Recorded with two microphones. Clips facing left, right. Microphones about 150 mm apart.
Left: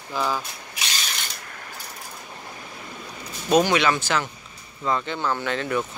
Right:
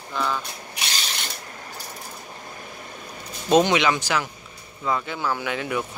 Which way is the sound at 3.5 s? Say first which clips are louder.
Right 1 dB; 20° right (ahead or behind).